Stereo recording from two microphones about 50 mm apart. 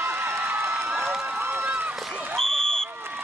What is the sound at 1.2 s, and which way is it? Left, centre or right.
Run, right.